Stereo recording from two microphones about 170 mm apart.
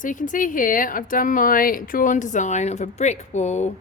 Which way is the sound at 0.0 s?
50° left (ahead or behind).